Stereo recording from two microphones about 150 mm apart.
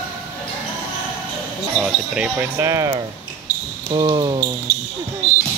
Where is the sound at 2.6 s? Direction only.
20° right (ahead or behind).